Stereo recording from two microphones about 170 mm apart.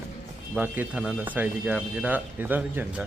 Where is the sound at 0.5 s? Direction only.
10° right (ahead or behind).